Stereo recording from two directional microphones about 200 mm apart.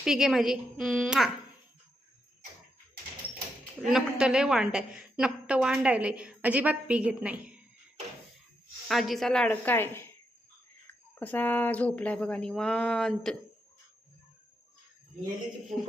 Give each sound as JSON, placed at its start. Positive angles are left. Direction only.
{"t": 0.0, "sound": "a woman's voice", "side_deg": -5}
{"t": 3.8, "sound": "a woman's voice", "side_deg": -5}
{"t": 8.9, "sound": "a woman's voice", "side_deg": 0}
{"t": 11.1, "sound": "speech", "side_deg": 10}